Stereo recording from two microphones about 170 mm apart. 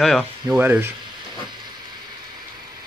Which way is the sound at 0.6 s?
10° right (ahead or behind).